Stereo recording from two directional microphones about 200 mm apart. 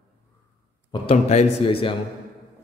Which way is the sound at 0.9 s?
30° left (ahead or behind).